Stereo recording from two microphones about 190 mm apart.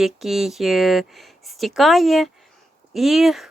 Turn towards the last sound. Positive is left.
turn(degrees=0)  # may be behind; listen again after turning